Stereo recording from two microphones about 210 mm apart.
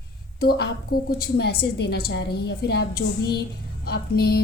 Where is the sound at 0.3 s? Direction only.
50° left (ahead or behind).